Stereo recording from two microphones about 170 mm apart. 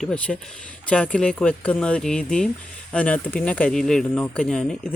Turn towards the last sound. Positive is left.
turn(degrees=5)  # may be behind; listen again after turning